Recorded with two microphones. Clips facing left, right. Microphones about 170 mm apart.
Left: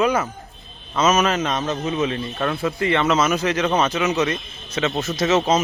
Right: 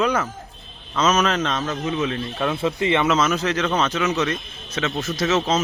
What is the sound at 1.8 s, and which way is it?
Speech, 25° left (ahead or behind).